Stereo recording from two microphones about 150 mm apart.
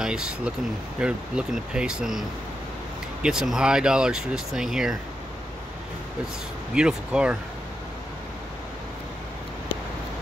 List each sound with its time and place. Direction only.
0.0 s speech: 5° right (ahead or behind)
6.7 s speech: 5° right (ahead or behind)